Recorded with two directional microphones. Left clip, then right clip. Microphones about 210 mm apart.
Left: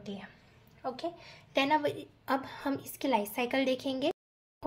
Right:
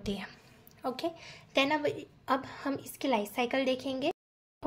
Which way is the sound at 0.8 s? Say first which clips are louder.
Right 2 dB; 30° right (ahead or behind).